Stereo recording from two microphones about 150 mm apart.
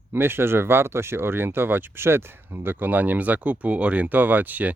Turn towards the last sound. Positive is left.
turn(degrees=-10)  # may be behind; listen again after turning